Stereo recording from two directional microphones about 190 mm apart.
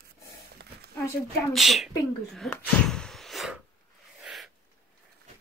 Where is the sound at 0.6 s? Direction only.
60° right (ahead or behind).